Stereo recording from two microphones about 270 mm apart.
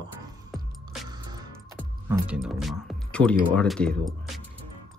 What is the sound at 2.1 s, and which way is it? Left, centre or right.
Speech, centre.